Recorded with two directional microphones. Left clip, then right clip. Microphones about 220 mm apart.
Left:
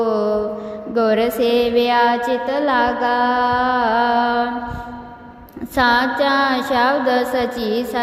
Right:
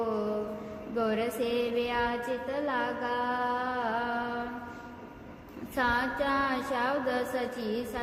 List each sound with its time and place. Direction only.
0.0 s music: 35° left (ahead or behind)
5.7 s music: 40° left (ahead or behind)